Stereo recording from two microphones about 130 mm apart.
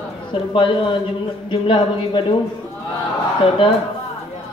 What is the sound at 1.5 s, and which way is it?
Speech, 40° left (ahead or behind).